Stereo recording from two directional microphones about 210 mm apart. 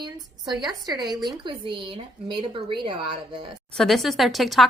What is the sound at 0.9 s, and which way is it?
A woman's voice, 20° right (ahead or behind).